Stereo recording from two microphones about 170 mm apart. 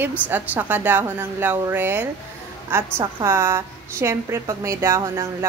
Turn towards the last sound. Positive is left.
turn(degrees=-15)  # may be behind; listen again after turning